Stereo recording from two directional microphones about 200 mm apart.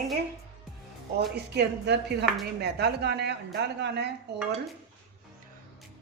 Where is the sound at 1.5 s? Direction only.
55° right (ahead or behind).